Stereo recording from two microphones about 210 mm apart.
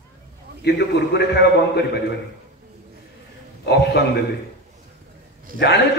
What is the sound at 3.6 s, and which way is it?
Speech, 50° left (ahead or behind).